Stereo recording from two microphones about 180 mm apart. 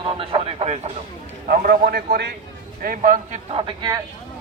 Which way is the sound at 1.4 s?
50° right (ahead or behind).